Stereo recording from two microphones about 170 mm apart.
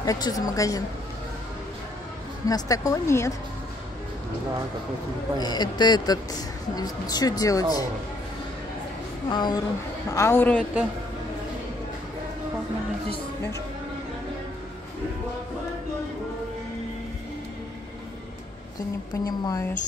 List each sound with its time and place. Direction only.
0.0 s speech: 20° left (ahead or behind)
2.4 s speech: 20° left (ahead or behind)
5.4 s speech: 25° left (ahead or behind)
9.3 s a woman's voice: 25° left (ahead or behind)
19.1 s speech: 20° left (ahead or behind)